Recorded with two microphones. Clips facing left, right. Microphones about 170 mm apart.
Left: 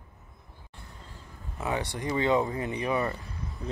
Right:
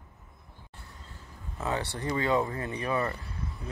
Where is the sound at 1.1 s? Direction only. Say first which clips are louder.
Right 1 dB; 15° left (ahead or behind).